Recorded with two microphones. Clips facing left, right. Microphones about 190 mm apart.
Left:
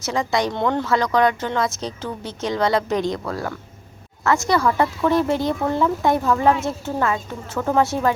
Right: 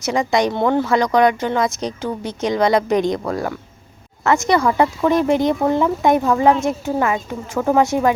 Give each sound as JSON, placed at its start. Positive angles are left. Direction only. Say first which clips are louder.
{"t": 0.0, "sound": "speech", "louder": "right 4 dB", "side_deg": -15}